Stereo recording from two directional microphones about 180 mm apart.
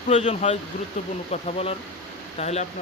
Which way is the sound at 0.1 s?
40° left (ahead or behind).